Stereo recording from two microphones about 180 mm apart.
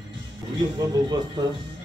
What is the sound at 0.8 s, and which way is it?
Speech, 20° right (ahead or behind).